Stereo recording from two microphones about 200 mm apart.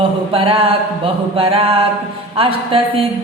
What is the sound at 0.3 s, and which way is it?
A woman's voice, 25° right (ahead or behind).